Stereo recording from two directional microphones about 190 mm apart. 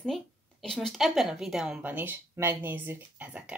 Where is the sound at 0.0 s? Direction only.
Centre (ahead or behind).